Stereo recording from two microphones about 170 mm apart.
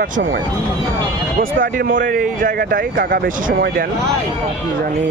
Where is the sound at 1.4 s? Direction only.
55° right (ahead or behind).